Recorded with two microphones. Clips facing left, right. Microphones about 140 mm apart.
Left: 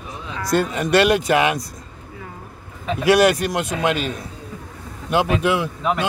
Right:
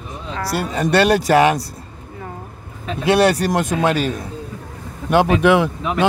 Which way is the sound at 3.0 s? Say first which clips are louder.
Even; 30° right (ahead or behind).